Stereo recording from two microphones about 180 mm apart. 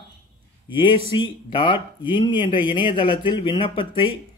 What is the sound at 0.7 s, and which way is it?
A man's voice, 25° left (ahead or behind).